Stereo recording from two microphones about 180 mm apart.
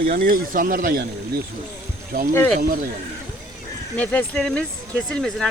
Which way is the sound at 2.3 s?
10° left (ahead or behind).